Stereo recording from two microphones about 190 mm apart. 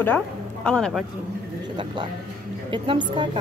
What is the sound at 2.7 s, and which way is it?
Speech, 25° right (ahead or behind).